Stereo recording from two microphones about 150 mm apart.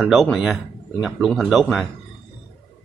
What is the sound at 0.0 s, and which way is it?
A man's voice, centre (ahead or behind).